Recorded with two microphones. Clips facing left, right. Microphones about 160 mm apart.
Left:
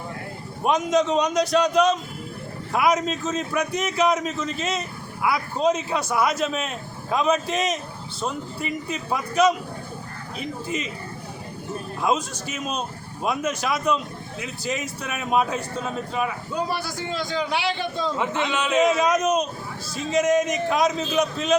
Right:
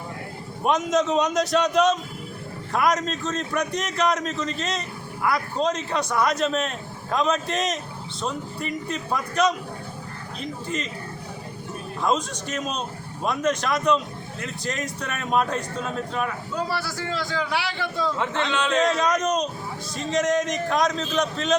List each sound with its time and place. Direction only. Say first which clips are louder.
0.6 s a man's voice: left 1 dB; centre (ahead or behind)
12.0 s a man's voice: even; 5° left (ahead or behind)
16.6 s a man's voice: left 1 dB; 15° left (ahead or behind)
18.3 s a man's voice: left 2 dB; 10° left (ahead or behind)